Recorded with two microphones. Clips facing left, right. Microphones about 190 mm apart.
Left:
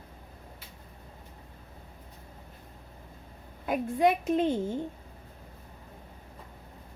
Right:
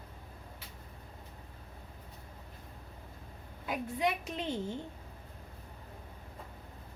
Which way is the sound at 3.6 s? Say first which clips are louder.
Left 8 dB; 50° left (ahead or behind).